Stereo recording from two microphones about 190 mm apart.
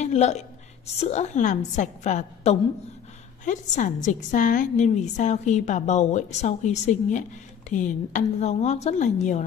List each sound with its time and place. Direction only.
0.0 s a woman's voice: 35° left (ahead or behind)